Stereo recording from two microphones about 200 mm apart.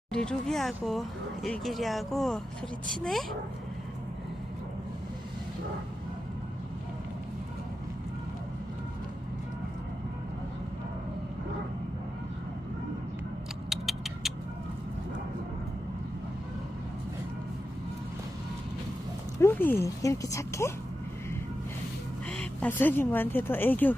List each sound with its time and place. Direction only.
0.1 s speech: 5° left (ahead or behind)
13.7 s a sound: centre (ahead or behind)
19.4 s speech: 10° left (ahead or behind)
22.4 s speech: 10° left (ahead or behind)